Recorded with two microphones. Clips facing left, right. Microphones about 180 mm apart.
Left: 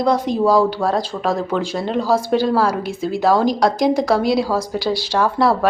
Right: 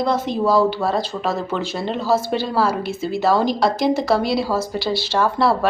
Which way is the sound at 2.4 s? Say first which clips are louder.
Left 3 dB; 5° right (ahead or behind).